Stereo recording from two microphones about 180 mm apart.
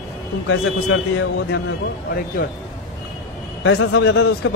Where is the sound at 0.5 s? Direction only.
90° left.